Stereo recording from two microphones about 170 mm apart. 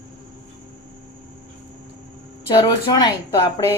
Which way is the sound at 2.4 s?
25° left (ahead or behind).